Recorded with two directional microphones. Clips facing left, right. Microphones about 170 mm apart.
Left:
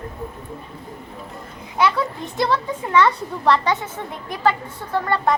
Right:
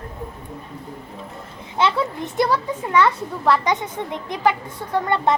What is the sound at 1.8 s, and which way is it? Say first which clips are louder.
Speech: left 1 dB; 25° right (ahead or behind).